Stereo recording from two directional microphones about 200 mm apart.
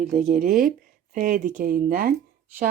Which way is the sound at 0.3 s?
45° right (ahead or behind).